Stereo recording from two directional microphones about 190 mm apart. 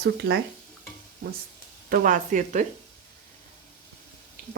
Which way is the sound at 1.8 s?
45° right (ahead or behind).